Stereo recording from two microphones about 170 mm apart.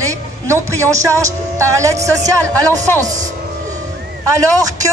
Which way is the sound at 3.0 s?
45° right (ahead or behind).